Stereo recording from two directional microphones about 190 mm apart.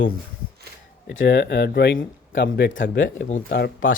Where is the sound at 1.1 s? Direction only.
75° left (ahead or behind).